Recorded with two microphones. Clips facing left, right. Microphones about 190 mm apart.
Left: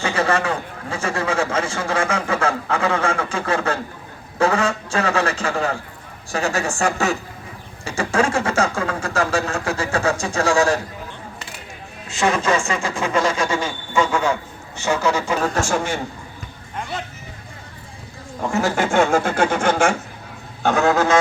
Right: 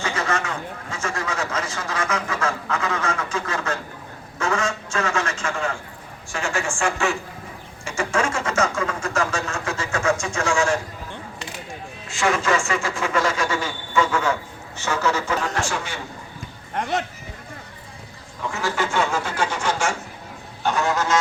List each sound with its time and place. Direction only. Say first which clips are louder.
0.0 s a man's voice: left 5 dB; 30° left (ahead or behind)
4.4 s a sound: left 5 dB; 35° left (ahead or behind)
6.3 s a man's voice: left 4 dB; 40° left (ahead or behind)
12.1 s speech: left 2 dB; 20° left (ahead or behind)
15.5 s speech: left 6 dB; 45° left (ahead or behind)
18.3 s speech: left 5 dB; 45° left (ahead or behind)
20.7 s a sound: left 5 dB; 60° left (ahead or behind)